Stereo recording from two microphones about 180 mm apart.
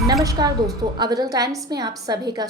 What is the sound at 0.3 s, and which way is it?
A woman's voice, 20° right (ahead or behind).